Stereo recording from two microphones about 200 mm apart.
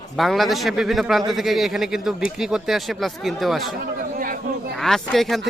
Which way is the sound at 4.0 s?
45° right (ahead or behind).